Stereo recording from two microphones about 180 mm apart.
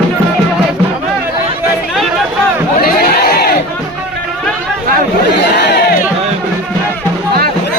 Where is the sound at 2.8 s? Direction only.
55° left (ahead or behind).